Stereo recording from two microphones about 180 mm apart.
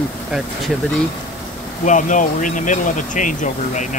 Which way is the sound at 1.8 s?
45° left (ahead or behind).